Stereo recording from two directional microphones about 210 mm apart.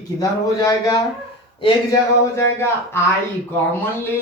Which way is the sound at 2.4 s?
10° left (ahead or behind).